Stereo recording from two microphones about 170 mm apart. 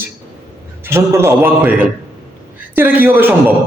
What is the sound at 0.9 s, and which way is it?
A man's voice, 15° right (ahead or behind).